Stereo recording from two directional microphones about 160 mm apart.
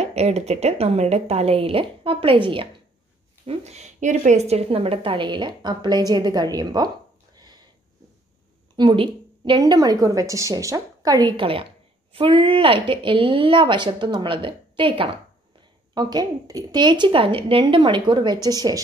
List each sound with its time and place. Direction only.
0.0 s a woman's voice: 40° right (ahead or behind)
3.4 s a woman's voice: 45° right (ahead or behind); by 6.9 s 25° right (ahead or behind)
7.3 s a sound: 25° right (ahead or behind)
8.7 s a woman's voice: 30° right (ahead or behind)